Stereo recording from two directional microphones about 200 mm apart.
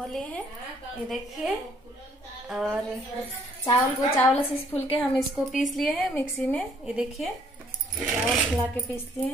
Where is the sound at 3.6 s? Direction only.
15° left (ahead or behind).